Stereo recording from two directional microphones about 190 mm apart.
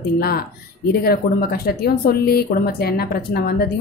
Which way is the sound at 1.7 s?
55° left (ahead or behind).